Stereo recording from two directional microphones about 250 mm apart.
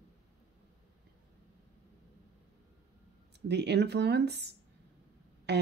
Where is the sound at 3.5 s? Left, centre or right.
Right.